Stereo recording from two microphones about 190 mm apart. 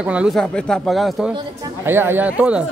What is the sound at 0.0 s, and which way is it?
Speech, 5° right (ahead or behind).